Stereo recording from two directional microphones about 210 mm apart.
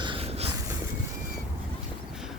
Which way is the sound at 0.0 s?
25° right (ahead or behind).